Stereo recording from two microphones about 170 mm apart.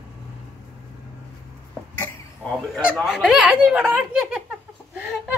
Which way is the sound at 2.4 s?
Centre (ahead or behind).